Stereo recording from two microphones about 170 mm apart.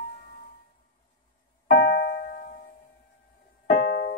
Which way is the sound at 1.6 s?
70° left (ahead or behind).